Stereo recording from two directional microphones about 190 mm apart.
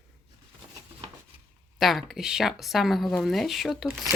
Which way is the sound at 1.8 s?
Centre (ahead or behind).